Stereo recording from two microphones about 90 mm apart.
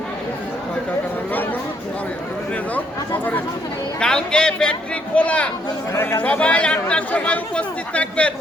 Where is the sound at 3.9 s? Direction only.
10° left (ahead or behind).